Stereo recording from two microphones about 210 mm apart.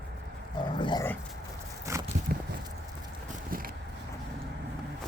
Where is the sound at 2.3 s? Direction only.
45° right (ahead or behind).